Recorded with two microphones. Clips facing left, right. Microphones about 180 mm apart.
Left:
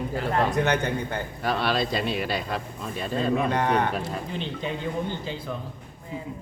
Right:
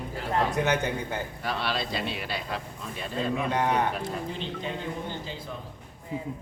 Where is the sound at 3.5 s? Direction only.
10° right (ahead or behind).